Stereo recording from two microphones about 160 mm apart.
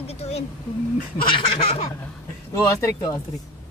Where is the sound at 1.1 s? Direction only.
30° left (ahead or behind).